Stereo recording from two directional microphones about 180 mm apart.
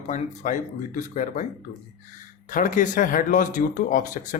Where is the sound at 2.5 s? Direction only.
50° left (ahead or behind).